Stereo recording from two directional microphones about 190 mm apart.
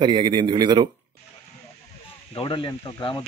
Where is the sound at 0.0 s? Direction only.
25° right (ahead or behind).